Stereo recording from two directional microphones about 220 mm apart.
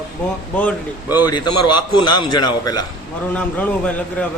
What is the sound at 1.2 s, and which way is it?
A man's voice, 20° left (ahead or behind).